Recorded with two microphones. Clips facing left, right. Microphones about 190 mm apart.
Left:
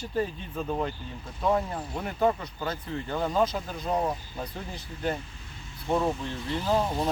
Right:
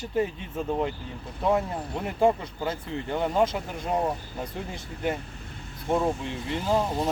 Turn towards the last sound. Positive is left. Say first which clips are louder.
# right 1 dB
turn(degrees=-10)  # may be behind; listen again after turning